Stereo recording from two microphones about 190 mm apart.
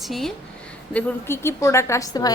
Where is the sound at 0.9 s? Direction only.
15° left (ahead or behind).